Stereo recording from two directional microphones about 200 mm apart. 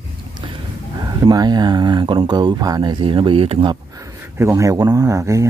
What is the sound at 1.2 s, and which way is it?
Speech, 20° right (ahead or behind).